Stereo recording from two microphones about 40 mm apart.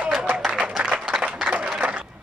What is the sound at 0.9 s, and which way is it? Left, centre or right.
Applause, right.